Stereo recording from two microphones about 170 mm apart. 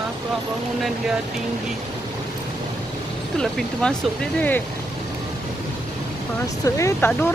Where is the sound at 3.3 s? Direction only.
5° left (ahead or behind).